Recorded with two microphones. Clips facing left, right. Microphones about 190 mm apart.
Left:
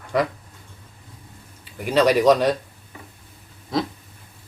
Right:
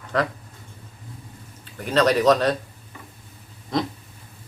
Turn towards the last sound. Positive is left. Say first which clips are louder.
# even
turn(degrees=5)  # may be behind; listen again after turning